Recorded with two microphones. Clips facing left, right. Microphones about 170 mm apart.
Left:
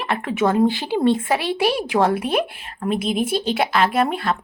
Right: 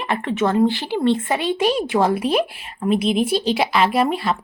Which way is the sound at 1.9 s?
Centre (ahead or behind).